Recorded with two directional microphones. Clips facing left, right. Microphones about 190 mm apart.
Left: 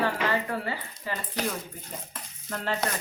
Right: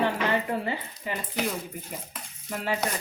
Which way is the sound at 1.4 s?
5° right (ahead or behind).